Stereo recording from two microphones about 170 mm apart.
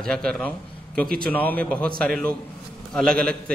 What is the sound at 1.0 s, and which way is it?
Speech, 60° right (ahead or behind).